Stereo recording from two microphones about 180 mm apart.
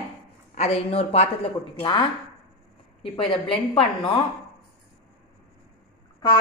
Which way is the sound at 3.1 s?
30° left (ahead or behind).